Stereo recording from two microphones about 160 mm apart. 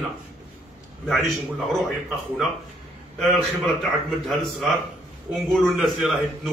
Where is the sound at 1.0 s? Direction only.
Centre (ahead or behind).